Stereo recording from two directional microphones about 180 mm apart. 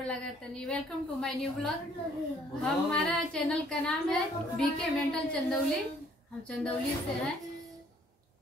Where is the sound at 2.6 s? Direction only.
5° left (ahead or behind).